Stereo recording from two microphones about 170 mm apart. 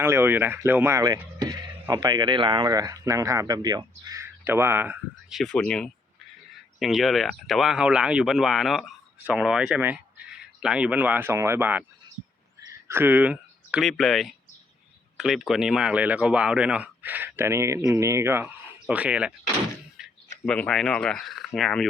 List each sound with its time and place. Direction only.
0.0 s speech: 15° right (ahead or behind)
5.3 s speech: 5° left (ahead or behind)
12.9 s speech: 10° right (ahead or behind)
20.0 s a sound: 5° right (ahead or behind)
20.4 s speech: 5° left (ahead or behind)